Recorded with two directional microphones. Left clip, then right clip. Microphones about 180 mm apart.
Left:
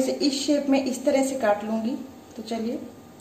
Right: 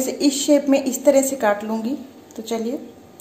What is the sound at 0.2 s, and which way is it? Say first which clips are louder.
A woman's voice: right 6 dB; 35° right (ahead or behind).